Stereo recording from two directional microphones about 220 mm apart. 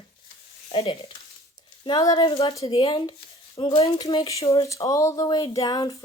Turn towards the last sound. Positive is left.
turn(degrees=20)  # may be behind; listen again after turning